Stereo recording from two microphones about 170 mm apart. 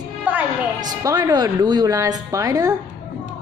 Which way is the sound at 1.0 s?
20° right (ahead or behind).